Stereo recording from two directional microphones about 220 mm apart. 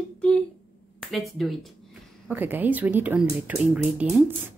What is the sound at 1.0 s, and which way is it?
Speech, centre (ahead or behind).